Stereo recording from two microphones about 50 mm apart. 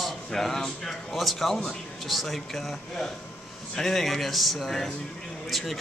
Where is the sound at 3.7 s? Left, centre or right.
Centre.